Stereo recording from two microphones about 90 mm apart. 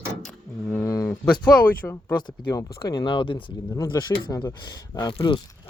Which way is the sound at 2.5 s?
40° left (ahead or behind).